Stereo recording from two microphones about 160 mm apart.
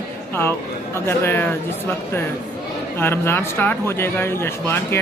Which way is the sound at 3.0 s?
15° left (ahead or behind).